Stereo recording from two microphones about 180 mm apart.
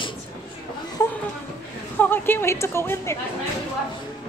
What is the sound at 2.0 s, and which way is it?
A woman's voice, 10° left (ahead or behind).